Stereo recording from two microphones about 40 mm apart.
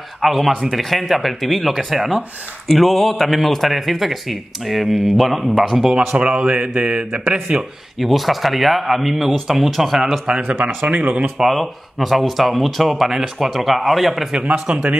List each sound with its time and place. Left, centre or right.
0.2 s speech: centre
6.1 s speech: right
8.0 s speech: centre
10.4 s speech: right
11.4 s speech: centre
14.3 s speech: right